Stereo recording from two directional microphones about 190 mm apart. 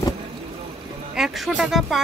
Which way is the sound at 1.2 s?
Centre (ahead or behind).